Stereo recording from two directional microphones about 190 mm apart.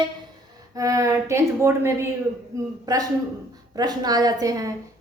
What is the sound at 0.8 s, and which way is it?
A woman's voice, 15° right (ahead or behind).